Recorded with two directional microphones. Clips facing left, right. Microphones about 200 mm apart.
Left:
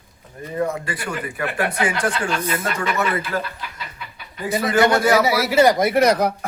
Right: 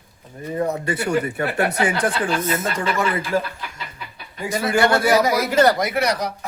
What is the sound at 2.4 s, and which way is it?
Speech, 25° right (ahead or behind).